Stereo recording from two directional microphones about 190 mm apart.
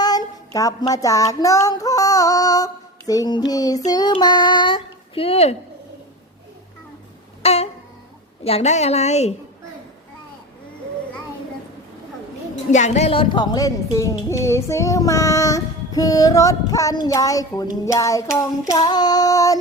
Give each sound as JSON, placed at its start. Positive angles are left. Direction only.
{"t": 0.0, "sound": "child singing", "side_deg": 20}
{"t": 7.4, "sound": "a sound", "side_deg": 35}
{"t": 8.4, "sound": "a woman's voice", "side_deg": 35}
{"t": 12.7, "sound": "a woman's voice", "side_deg": 35}
{"t": 18.3, "sound": "child singing", "side_deg": 20}